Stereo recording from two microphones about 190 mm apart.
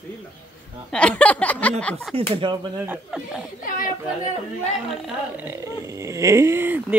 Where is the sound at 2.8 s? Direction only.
5° right (ahead or behind).